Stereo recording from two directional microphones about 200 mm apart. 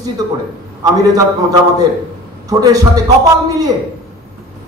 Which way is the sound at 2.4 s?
15° right (ahead or behind).